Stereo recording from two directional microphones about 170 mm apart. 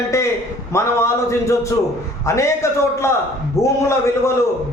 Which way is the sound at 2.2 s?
15° left (ahead or behind).